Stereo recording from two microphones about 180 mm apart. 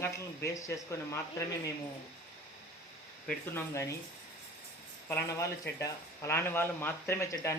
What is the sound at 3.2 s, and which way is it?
Speech, 15° left (ahead or behind).